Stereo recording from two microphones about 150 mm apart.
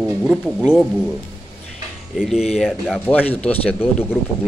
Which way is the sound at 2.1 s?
5° right (ahead or behind).